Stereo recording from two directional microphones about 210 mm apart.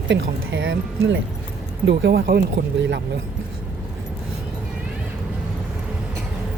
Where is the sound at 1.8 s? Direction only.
50° right (ahead or behind).